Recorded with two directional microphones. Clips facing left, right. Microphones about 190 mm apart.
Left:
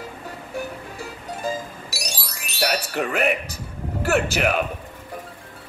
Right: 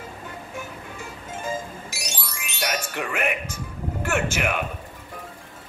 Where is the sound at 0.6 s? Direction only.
35° left (ahead or behind).